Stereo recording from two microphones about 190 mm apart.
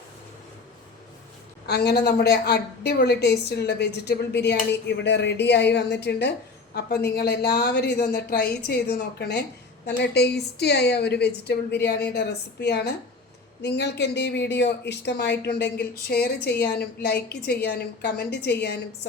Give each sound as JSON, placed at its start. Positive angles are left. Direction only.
{"t": 1.6, "sound": "a woman's voice", "side_deg": 60}